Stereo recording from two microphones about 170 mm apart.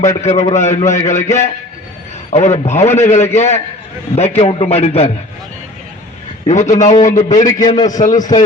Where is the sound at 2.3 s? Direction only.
40° left (ahead or behind).